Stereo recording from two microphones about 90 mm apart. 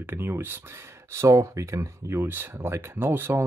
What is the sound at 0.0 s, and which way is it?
Speech, 25° right (ahead or behind).